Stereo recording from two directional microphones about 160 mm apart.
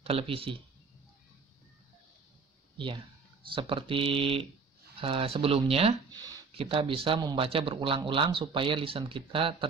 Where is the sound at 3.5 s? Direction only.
35° right (ahead or behind).